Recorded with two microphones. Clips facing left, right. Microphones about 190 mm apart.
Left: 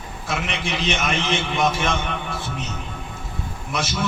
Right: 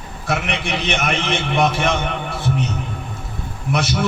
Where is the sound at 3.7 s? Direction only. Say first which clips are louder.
Right 6 dB; 60° right (ahead or behind).